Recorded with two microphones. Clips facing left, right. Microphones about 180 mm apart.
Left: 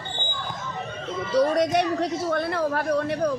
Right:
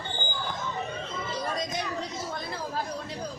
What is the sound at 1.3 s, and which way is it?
A man's voice, 70° left (ahead or behind).